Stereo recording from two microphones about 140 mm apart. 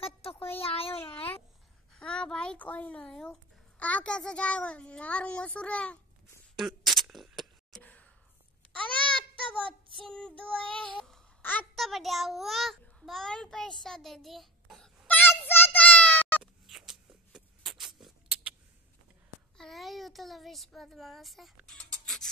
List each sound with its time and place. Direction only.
0.0 s a sound: 45° left (ahead or behind)
2.0 s a child's voice: 5° left (ahead or behind)
6.5 s a sound: centre (ahead or behind)
7.8 s whispering: 10° left (ahead or behind)
8.9 s child singing: 40° right (ahead or behind)
10.1 s a child's voice: 5° left (ahead or behind)
10.7 s child singing: 5° left (ahead or behind)
11.7 s a child's voice: centre (ahead or behind)
15.0 s a sound: 15° left (ahead or behind)
16.6 s a sound: centre (ahead or behind)
18.0 s rodents: 10° right (ahead or behind)
19.5 s speech: centre (ahead or behind)